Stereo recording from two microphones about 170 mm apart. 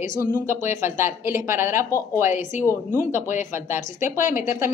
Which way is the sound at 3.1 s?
45° left (ahead or behind).